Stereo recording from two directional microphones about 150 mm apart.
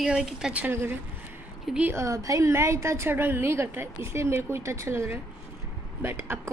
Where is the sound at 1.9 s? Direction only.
20° right (ahead or behind).